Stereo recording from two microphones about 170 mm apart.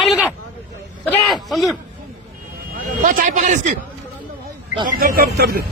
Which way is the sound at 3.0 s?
50° right (ahead or behind).